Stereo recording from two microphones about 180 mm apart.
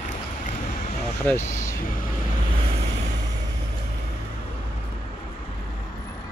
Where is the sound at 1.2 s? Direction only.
15° left (ahead or behind).